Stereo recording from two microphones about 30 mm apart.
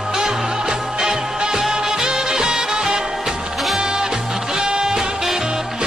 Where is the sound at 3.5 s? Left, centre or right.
Centre.